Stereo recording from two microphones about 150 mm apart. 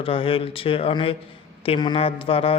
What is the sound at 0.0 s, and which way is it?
Speech, 35° left (ahead or behind).